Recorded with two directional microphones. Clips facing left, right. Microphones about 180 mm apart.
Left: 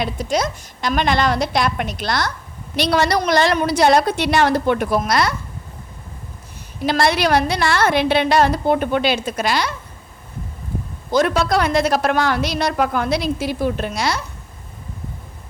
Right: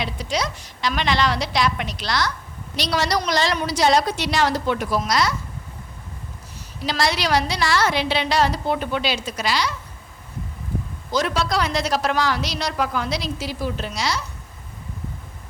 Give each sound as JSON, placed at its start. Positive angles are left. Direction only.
{"t": 0.0, "sound": "a woman's voice", "side_deg": 50}
{"t": 6.7, "sound": "a woman's voice", "side_deg": 55}
{"t": 11.1, "sound": "a woman's voice", "side_deg": 55}